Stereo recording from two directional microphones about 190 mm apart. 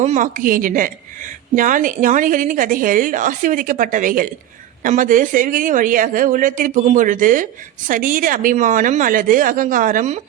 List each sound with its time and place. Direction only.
0.0 s a woman's voice: 40° right (ahead or behind)